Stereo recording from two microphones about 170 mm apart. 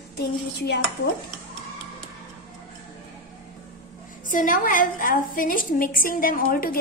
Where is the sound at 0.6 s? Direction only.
75° left (ahead or behind).